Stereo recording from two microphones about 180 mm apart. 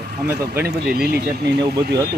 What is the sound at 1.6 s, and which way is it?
Speech, 20° right (ahead or behind).